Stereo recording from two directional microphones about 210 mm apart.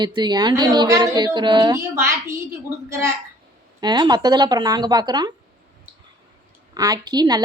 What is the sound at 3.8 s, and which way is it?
A woman's voice, 20° right (ahead or behind).